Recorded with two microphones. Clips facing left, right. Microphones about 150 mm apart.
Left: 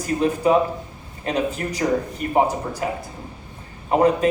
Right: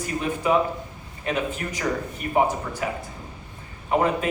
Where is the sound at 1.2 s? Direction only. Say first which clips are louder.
Left 3 dB; 35° left (ahead or behind).